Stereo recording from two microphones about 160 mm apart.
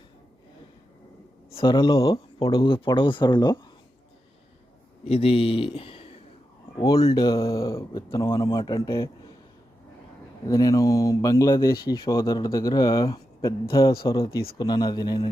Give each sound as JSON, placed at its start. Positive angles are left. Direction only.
{"t": 1.5, "sound": "speech", "side_deg": 30}
{"t": 5.0, "sound": "speech", "side_deg": 35}
{"t": 10.5, "sound": "speech", "side_deg": 20}